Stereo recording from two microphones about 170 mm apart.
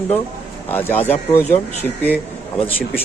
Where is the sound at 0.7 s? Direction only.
10° left (ahead or behind).